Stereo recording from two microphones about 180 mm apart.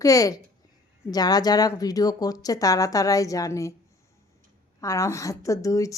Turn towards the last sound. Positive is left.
turn(degrees=20)  # may be behind; listen again after turning